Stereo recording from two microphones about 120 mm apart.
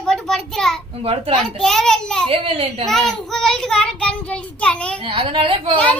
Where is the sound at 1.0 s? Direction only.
55° right (ahead or behind).